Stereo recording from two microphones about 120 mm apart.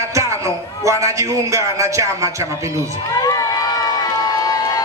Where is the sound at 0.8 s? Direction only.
25° right (ahead or behind).